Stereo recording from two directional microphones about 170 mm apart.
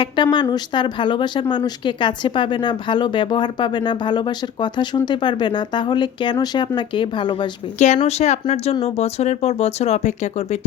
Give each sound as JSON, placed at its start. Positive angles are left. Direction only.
{"t": 0.0, "sound": "speech", "side_deg": 25}
{"t": 8.0, "sound": "speech", "side_deg": 40}